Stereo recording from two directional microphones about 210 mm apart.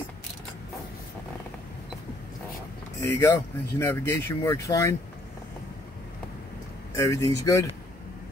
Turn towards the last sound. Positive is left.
turn(degrees=15)  # may be behind; listen again after turning